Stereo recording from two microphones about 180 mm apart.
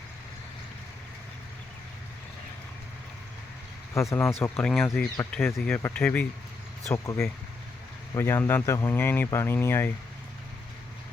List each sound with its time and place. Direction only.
3.9 s speech: 15° left (ahead or behind)